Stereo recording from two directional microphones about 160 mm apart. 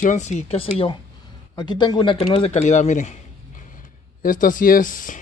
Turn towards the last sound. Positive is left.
turn(degrees=55)  # may be behind; listen again after turning